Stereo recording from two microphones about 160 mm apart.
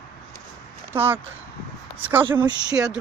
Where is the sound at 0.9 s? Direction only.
15° right (ahead or behind).